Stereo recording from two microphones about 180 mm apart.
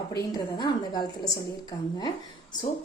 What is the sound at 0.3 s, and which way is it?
Speech, 20° left (ahead or behind).